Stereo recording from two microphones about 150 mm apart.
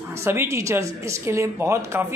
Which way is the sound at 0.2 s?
15° right (ahead or behind).